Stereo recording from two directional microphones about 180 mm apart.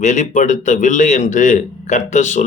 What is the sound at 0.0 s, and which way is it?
A man's voice, 45° left (ahead or behind).